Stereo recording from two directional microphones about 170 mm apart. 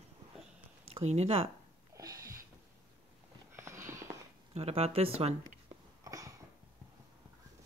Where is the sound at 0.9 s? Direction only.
40° right (ahead or behind).